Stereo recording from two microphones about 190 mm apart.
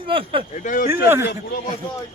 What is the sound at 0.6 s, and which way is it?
Speech, 45° left (ahead or behind).